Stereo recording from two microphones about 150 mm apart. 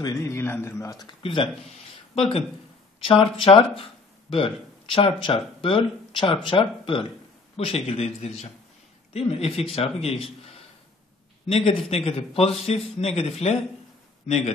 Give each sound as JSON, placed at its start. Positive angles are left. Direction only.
{"t": 0.0, "sound": "a man's voice", "side_deg": 20}